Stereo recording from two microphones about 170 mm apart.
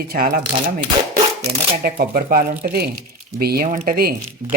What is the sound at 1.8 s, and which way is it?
Speech, 55° right (ahead or behind).